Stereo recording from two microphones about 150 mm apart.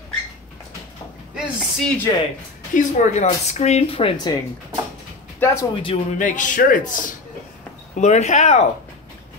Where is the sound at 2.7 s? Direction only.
55° left (ahead or behind); by 4.1 s 40° left (ahead or behind).